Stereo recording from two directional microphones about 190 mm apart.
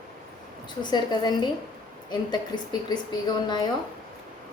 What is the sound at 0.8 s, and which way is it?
A woman's voice, 20° left (ahead or behind).